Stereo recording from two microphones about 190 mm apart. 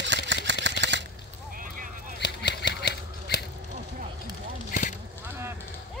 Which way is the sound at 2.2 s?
65° left (ahead or behind).